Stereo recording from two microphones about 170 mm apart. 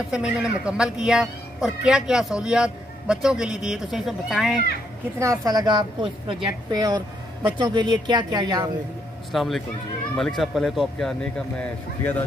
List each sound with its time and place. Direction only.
0.1 s speech: 5° right (ahead or behind)
5.2 s a woman's voice: 20° right (ahead or behind)
9.3 s a man's voice: centre (ahead or behind)